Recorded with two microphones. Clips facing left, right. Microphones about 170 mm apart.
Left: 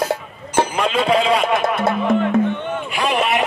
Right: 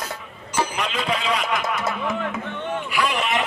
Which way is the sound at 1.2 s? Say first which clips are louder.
Left 7 dB; 25° left (ahead or behind).